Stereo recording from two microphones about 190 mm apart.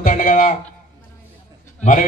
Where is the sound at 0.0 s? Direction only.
45° left (ahead or behind).